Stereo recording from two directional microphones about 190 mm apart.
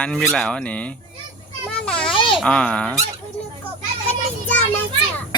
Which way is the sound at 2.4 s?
5° left (ahead or behind).